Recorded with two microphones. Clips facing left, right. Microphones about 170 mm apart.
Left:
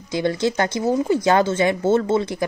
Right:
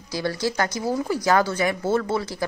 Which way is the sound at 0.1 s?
20° left (ahead or behind).